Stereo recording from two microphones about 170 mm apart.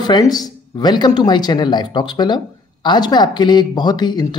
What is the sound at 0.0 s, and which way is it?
Speech, 25° left (ahead or behind).